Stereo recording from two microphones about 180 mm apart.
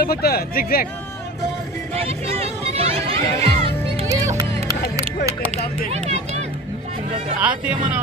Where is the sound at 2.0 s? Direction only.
35° right (ahead or behind).